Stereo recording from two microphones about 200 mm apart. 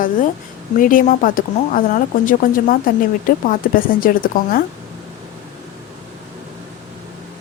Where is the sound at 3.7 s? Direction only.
45° left (ahead or behind).